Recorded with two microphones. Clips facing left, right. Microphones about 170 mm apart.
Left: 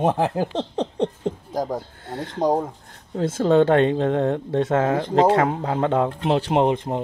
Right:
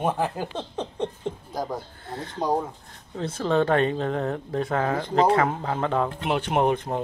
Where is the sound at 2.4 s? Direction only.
45° left (ahead or behind).